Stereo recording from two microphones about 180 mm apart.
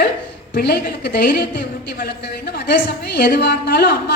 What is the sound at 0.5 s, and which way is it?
A woman's voice, 55° left (ahead or behind).